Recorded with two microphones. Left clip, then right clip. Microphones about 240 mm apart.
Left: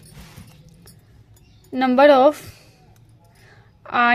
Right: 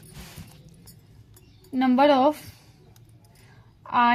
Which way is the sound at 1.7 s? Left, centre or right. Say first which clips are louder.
Left 6 dB; left.